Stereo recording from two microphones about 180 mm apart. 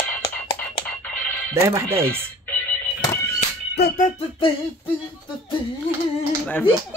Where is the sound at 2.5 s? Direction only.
10° left (ahead or behind).